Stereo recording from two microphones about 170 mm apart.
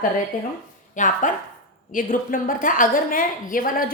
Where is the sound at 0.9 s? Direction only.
50° left (ahead or behind).